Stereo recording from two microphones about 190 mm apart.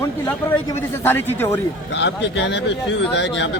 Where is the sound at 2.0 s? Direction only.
70° left (ahead or behind).